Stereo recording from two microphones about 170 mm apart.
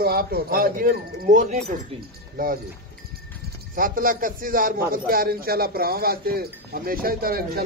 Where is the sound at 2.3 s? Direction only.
55° right (ahead or behind).